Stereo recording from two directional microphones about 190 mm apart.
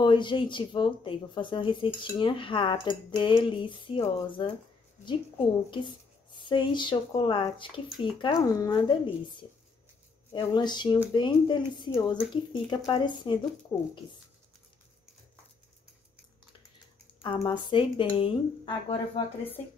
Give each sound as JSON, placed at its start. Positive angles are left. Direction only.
{"t": 0.0, "sound": "speech", "side_deg": 25}
{"t": 5.7, "sound": "speech", "side_deg": 25}
{"t": 10.4, "sound": "speech", "side_deg": 25}
{"t": 13.7, "sound": "speech", "side_deg": 10}
{"t": 17.2, "sound": "speech", "side_deg": 25}